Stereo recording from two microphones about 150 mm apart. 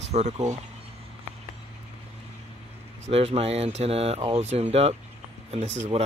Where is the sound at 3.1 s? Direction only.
40° right (ahead or behind).